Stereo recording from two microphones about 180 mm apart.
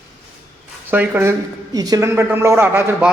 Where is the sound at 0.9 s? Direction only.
10° right (ahead or behind).